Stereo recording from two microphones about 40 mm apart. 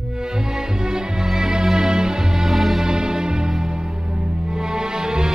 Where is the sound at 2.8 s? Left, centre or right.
Centre.